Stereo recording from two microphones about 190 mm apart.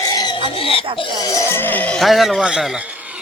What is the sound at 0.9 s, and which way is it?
Music, 25° left (ahead or behind).